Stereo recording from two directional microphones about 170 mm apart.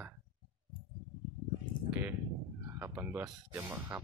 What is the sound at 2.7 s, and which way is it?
Speech, 10° right (ahead or behind).